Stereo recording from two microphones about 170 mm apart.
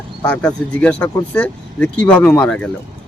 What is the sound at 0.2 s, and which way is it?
Speech, 5° left (ahead or behind).